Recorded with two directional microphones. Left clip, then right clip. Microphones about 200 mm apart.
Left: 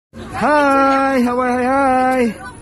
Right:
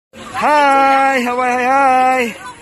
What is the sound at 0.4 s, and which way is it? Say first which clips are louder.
Speech: right 2 dB; 15° left (ahead or behind).